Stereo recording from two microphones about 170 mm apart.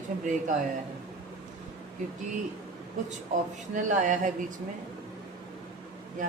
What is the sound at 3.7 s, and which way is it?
Speech, 50° right (ahead or behind).